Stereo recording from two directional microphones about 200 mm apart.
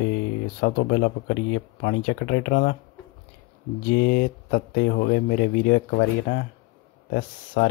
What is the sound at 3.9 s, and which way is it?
Speech, 50° left (ahead or behind).